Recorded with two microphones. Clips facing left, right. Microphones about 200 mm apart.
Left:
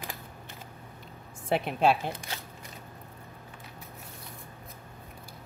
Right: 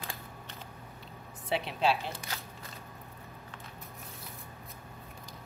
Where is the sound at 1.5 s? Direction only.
50° left (ahead or behind).